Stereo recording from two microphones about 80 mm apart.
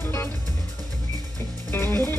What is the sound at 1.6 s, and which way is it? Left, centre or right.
Music, left.